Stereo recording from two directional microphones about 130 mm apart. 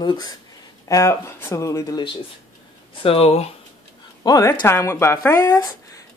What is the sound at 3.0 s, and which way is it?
Speech, 50° left (ahead or behind).